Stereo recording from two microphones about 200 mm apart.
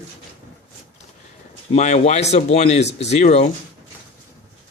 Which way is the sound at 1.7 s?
35° left (ahead or behind).